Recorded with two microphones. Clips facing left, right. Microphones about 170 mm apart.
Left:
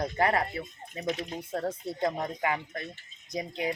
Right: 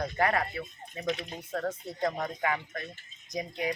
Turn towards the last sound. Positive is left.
turn(degrees=25)  # may be behind; listen again after turning